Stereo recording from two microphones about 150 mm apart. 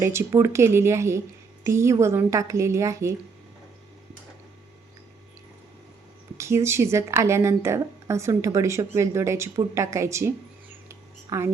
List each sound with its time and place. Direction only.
0.0 s a woman's voice: 15° right (ahead or behind)
6.3 s a woman's voice: 20° right (ahead or behind)
10.8 s a sound: 20° right (ahead or behind)